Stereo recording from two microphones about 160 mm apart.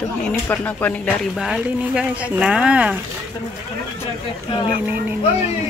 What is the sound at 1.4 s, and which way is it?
Speech, 5° right (ahead or behind).